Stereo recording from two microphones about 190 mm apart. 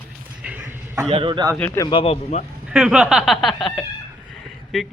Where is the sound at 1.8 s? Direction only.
25° left (ahead or behind).